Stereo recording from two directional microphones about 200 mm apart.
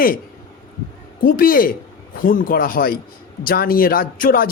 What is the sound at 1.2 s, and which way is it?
A man's voice, 45° left (ahead or behind).